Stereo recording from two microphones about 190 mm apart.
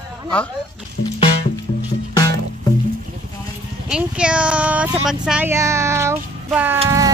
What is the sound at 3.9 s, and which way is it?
Speech, 5° right (ahead or behind).